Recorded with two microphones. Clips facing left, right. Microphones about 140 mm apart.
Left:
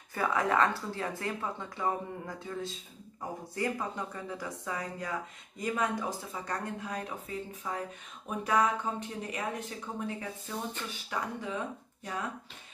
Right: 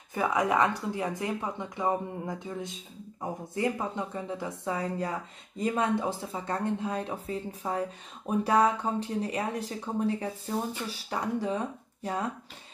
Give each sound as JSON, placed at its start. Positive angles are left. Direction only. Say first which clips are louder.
{"t": 0.1, "sound": "speech", "louder": "right 2 dB", "side_deg": -20}